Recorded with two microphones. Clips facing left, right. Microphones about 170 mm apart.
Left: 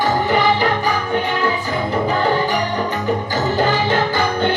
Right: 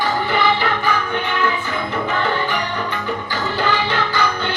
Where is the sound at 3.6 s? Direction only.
45° left (ahead or behind).